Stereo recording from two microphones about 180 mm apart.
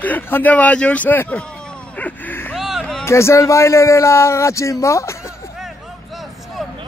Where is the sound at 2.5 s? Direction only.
Centre (ahead or behind).